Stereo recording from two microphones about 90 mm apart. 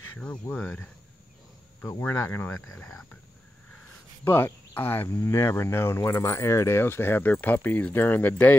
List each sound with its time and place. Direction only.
0.2 s speech: 10° left (ahead or behind)
2.0 s speech: 30° left (ahead or behind)
4.2 s speech: 30° left (ahead or behind)